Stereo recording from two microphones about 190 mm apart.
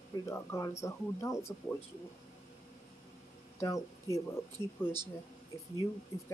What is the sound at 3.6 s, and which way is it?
Speech, 15° left (ahead or behind).